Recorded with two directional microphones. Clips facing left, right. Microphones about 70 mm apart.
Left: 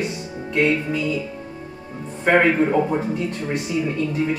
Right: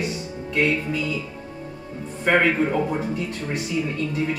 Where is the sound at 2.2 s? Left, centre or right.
Centre.